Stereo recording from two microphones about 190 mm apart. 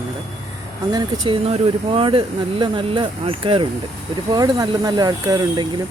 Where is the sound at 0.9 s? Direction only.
25° right (ahead or behind).